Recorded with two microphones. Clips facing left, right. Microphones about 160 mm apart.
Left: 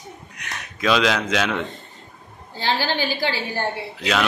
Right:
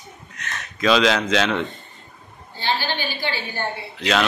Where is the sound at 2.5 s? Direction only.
90° left.